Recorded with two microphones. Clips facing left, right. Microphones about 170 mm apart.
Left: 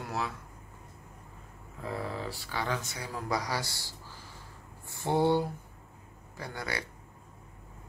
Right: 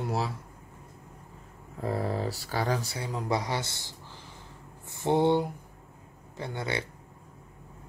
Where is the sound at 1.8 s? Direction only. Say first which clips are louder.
Right 6 dB; 40° right (ahead or behind); by 6.8 s 25° right (ahead or behind).